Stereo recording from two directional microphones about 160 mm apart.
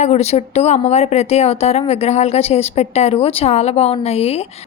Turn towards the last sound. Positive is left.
turn(degrees=40)  # may be behind; listen again after turning